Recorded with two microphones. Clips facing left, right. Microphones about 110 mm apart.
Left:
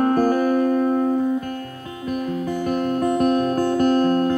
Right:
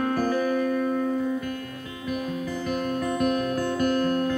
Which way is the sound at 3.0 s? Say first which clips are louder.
Left 6 dB; 40° left (ahead or behind).